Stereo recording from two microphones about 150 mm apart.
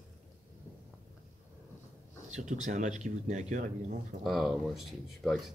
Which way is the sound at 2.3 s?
55° right (ahead or behind).